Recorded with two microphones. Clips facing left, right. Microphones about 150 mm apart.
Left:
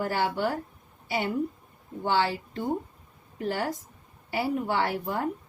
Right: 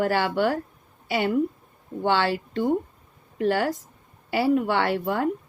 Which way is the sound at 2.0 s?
80° right.